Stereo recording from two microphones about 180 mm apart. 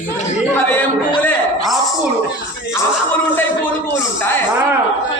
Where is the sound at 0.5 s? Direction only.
10° left (ahead or behind).